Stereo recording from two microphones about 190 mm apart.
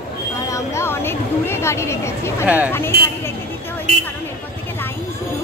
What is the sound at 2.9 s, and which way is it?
Speech, 55° right (ahead or behind).